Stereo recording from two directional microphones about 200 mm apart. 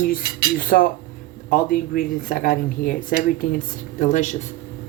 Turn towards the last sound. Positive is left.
turn(degrees=40)  # may be behind; listen again after turning